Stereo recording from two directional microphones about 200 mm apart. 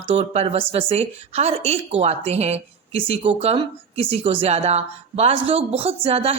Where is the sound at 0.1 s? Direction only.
30° right (ahead or behind).